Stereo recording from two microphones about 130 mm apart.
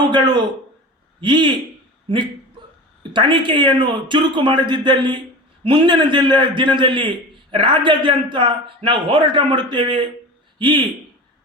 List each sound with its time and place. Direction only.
0.1 s a man's voice: 35° right (ahead or behind)
3.0 s a man's voice: 40° right (ahead or behind)